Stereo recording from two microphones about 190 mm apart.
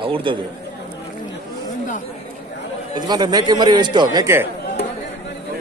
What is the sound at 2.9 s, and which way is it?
A man's voice, 20° right (ahead or behind).